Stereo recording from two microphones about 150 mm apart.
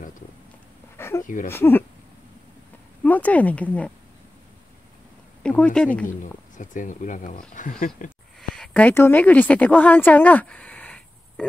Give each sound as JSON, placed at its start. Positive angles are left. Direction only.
{"t": 0.9, "sound": "a sound", "side_deg": 15}
{"t": 1.2, "sound": "speech", "side_deg": 60}
{"t": 1.5, "sound": "speech", "side_deg": 15}
{"t": 3.0, "sound": "speech", "side_deg": 10}
{"t": 5.4, "sound": "speech", "side_deg": 5}
{"t": 6.0, "sound": "speech", "side_deg": 60}
{"t": 8.4, "sound": "a woman's voice", "side_deg": 5}